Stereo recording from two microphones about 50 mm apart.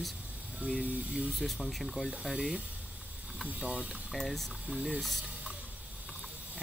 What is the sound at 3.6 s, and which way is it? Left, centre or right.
Speech, right.